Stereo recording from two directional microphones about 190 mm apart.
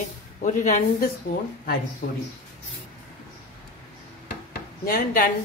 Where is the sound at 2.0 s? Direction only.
60° left (ahead or behind).